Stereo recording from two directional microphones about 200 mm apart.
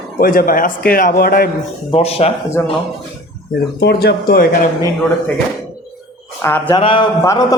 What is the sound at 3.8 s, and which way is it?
Speech, 55° left (ahead or behind).